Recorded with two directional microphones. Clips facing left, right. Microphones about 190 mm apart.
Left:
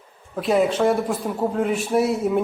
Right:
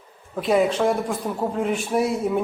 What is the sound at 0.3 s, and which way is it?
A man's voice, centre (ahead or behind).